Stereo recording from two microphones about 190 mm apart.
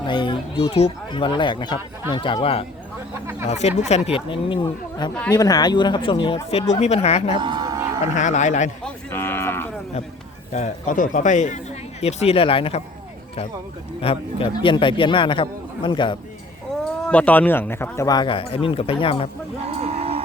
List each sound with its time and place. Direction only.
0.0 s speech: 25° left (ahead or behind)
7.4 s a sound: 20° right (ahead or behind)
8.1 s speech: 40° left (ahead or behind)
8.8 s cattle: 10° left (ahead or behind)
10.5 s speech: 40° left (ahead or behind)
14.0 s speech: 30° left (ahead or behind)
17.1 s speech: 5° left (ahead or behind); by 19.3 s 30° left (ahead or behind)
19.8 s music: 30° right (ahead or behind)